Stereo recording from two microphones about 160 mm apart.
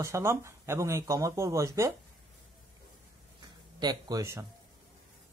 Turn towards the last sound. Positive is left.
turn(degrees=-20)  # may be behind; listen again after turning